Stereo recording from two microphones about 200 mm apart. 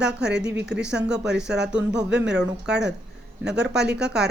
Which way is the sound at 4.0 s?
5° right (ahead or behind).